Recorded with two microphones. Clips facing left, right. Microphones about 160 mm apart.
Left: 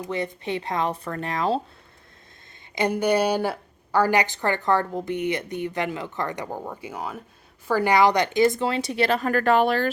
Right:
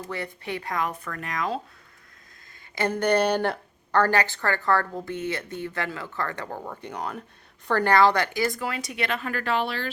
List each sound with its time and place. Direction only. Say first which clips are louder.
0.0 s speech: left 5 dB; 20° left (ahead or behind)
2.7 s a woman's voice: left 1 dB; 15° left (ahead or behind); by 9.9 s 45° left (ahead or behind)